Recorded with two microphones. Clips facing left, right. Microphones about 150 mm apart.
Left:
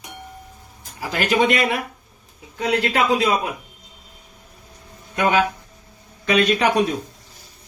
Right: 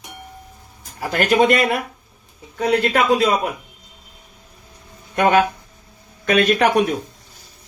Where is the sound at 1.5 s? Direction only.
Centre (ahead or behind).